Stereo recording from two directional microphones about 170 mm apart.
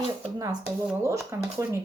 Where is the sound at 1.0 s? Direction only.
15° right (ahead or behind).